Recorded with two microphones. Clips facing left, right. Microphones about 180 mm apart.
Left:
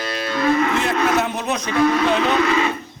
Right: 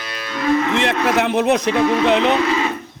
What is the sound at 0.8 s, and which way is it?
Speech, 75° right (ahead or behind).